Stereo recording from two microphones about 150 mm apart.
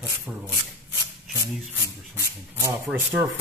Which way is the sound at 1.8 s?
20° right (ahead or behind).